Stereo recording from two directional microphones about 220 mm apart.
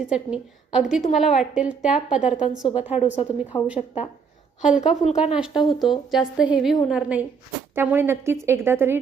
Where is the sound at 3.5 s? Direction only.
20° left (ahead or behind).